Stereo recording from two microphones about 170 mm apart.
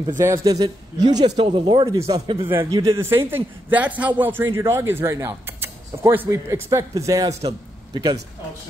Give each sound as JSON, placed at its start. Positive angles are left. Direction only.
{"t": 0.2, "sound": "speech", "side_deg": -20}